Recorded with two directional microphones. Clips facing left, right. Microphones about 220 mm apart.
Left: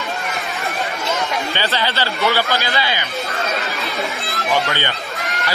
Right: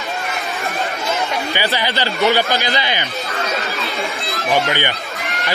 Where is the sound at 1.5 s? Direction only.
15° right (ahead or behind).